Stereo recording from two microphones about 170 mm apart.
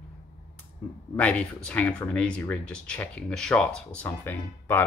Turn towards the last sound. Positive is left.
turn(degrees=10)  # may be behind; listen again after turning